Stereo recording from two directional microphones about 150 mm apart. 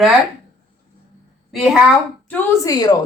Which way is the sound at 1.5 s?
Centre (ahead or behind).